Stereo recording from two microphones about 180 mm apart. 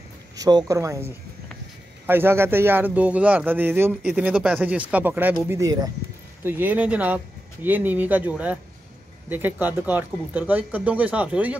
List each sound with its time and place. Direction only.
0.4 s a man's voice: 20° right (ahead or behind)